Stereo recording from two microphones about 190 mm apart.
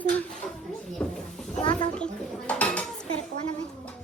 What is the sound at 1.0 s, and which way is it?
Children playing, 5° left (ahead or behind).